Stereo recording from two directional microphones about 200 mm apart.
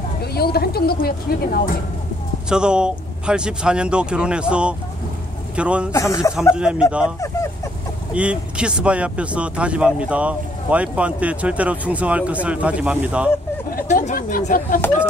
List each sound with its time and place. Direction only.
0.2 s a woman's voice: 50° left (ahead or behind)
2.5 s speech: 5° right (ahead or behind)
5.9 s speech: 15° left (ahead or behind)
6.5 s speech: 5° right (ahead or behind)
8.1 s speech: 5° right (ahead or behind)
13.7 s speech: 40° left (ahead or behind)